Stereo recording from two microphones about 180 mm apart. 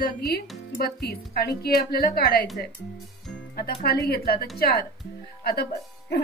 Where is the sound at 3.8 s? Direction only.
60° left (ahead or behind).